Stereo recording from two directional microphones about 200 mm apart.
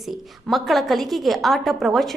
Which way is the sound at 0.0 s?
Centre (ahead or behind).